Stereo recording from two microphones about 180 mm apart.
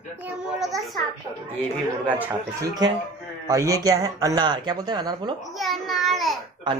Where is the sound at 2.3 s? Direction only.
20° right (ahead or behind).